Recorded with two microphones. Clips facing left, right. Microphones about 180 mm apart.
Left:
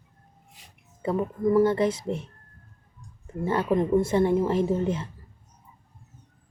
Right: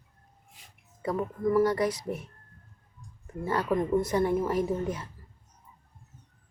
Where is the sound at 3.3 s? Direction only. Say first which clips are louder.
Left 3 dB; 25° left (ahead or behind).